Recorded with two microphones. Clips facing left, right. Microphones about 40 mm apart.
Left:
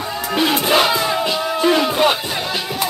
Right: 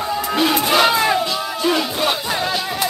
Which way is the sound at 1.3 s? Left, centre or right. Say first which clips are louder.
Left 3 dB; centre.